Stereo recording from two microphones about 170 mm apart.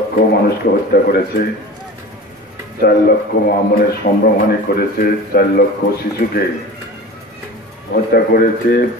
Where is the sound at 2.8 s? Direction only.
60° left (ahead or behind).